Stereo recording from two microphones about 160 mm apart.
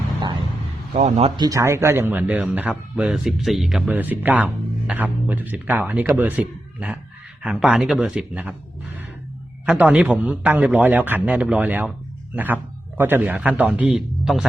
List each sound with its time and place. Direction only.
0.9 s speech: 45° right (ahead or behind)
1.4 s a man's voice: 20° right (ahead or behind)
9.6 s speech: 5° right (ahead or behind)
13.0 s speech: 15° right (ahead or behind)